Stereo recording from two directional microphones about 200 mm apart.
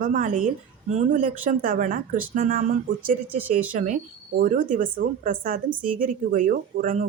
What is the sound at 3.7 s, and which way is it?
Speech, 40° right (ahead or behind).